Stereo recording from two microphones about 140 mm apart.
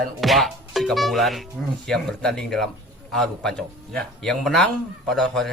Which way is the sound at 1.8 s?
5° left (ahead or behind).